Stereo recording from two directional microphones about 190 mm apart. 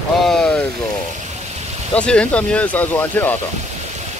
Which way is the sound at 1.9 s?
5° left (ahead or behind).